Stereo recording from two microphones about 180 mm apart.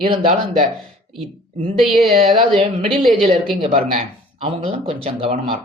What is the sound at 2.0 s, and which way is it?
Speech, 30° right (ahead or behind).